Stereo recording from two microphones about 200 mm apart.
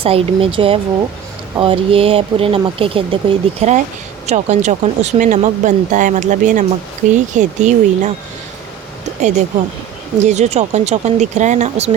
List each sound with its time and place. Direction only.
0.0 s speech: 30° right (ahead or behind)
10.2 s speech: 35° right (ahead or behind)